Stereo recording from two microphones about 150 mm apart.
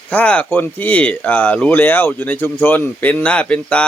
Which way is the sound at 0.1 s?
10° left (ahead or behind).